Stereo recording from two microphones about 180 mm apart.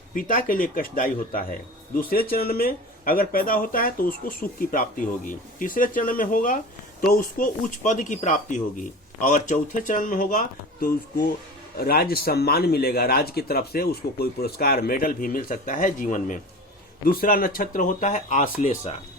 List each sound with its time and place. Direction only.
0.1 s a man's voice: 50° left (ahead or behind)